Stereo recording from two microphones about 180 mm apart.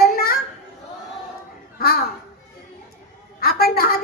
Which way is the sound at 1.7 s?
55° left (ahead or behind).